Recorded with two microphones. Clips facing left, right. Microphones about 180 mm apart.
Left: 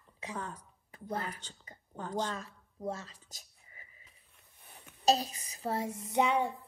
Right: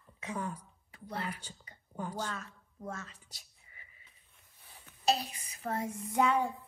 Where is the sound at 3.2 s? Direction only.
40° left (ahead or behind).